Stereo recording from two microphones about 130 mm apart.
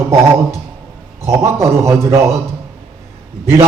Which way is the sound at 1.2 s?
20° right (ahead or behind).